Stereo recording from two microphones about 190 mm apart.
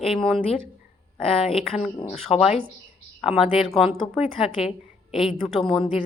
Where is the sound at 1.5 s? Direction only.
30° left (ahead or behind).